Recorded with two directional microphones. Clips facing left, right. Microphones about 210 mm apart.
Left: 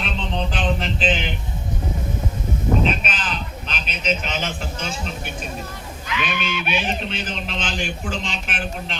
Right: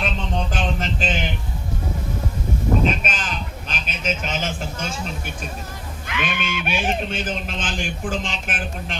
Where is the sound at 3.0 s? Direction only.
45° right (ahead or behind).